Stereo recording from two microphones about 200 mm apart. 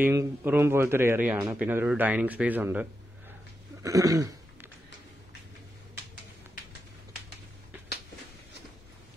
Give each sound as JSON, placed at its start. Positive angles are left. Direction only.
{"t": 0.0, "sound": "speech", "side_deg": -10}
{"t": 3.8, "sound": "cough", "side_deg": -15}